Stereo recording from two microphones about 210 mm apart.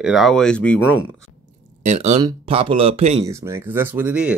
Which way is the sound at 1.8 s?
30° right (ahead or behind).